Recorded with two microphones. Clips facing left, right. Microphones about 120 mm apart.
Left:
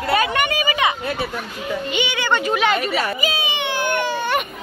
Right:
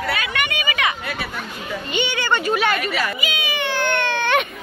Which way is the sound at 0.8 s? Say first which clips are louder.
Left 2 dB; 25° left (ahead or behind).